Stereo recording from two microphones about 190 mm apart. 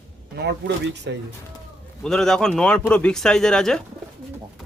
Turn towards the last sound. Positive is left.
turn(degrees=5)  # may be behind; listen again after turning